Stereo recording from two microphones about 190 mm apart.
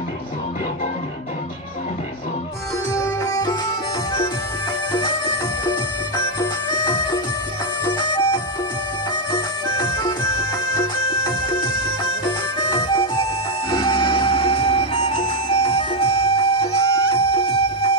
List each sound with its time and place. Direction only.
2.9 s music: 15° left (ahead or behind)
6.7 s music: 20° left (ahead or behind)